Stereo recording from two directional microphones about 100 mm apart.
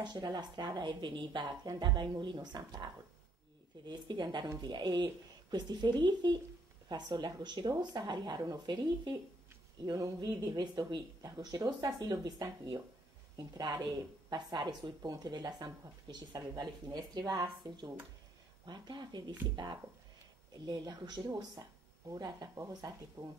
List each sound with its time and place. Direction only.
0.0 s speech: 45° right (ahead or behind)